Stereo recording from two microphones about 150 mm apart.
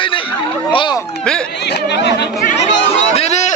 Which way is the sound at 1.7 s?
90° left.